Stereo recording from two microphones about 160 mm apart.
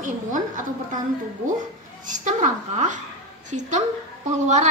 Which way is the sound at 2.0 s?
50° right (ahead or behind).